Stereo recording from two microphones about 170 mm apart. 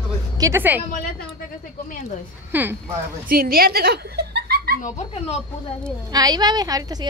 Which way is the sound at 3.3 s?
60° right (ahead or behind).